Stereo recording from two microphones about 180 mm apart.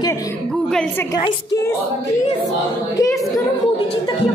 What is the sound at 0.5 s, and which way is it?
Speech, 5° left (ahead or behind).